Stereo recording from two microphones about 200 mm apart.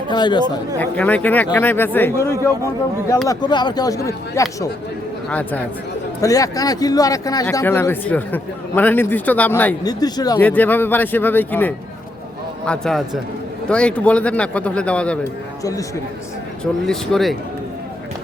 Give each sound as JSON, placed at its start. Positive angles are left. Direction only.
{"t": 0.1, "sound": "speech", "side_deg": 20}
{"t": 0.8, "sound": "a man's voice", "side_deg": 10}
{"t": 10.4, "sound": "a man's voice", "side_deg": 10}
{"t": 16.8, "sound": "speech", "side_deg": 0}